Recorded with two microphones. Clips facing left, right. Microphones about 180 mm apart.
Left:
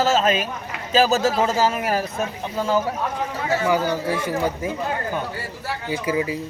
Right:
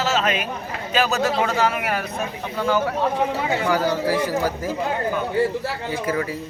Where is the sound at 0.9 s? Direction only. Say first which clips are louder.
Left 3 dB; 35° left (ahead or behind).